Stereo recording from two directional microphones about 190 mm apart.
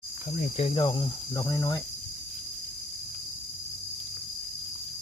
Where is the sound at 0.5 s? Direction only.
30° left (ahead or behind).